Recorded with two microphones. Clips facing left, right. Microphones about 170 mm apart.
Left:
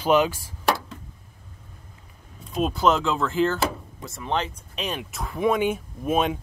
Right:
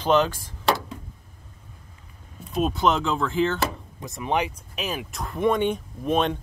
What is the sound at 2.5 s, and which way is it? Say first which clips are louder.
Speech: left 1 dB; centre (ahead or behind).